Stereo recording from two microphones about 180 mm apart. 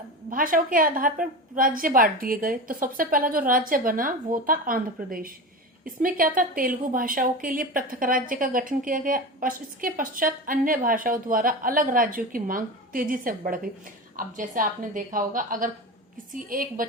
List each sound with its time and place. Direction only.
0.3 s a woman's voice: 50° right (ahead or behind)